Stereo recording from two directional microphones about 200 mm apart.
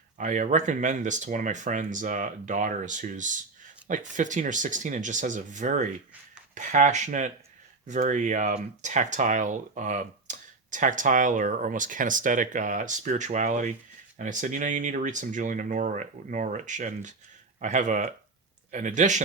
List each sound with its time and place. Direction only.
0.2 s speech: 40° right (ahead or behind)